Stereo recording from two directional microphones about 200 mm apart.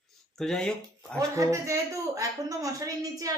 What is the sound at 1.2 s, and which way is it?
A woman's voice, 15° right (ahead or behind).